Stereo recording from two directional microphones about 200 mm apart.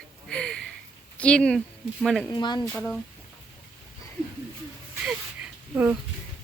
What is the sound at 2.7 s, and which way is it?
Speech, 5° left (ahead or behind).